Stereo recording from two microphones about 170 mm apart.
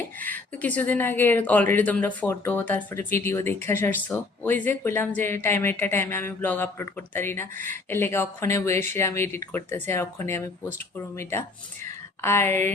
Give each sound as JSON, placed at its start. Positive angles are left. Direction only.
{"t": 0.2, "sound": "speech", "side_deg": 10}
{"t": 7.5, "sound": "speech", "side_deg": -50}
{"t": 7.9, "sound": "speech", "side_deg": 15}